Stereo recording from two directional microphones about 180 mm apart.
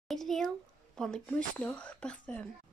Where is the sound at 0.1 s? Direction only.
Centre (ahead or behind).